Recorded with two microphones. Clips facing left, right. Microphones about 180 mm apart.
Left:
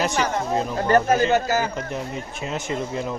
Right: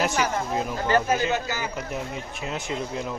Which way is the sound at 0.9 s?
45° left (ahead or behind).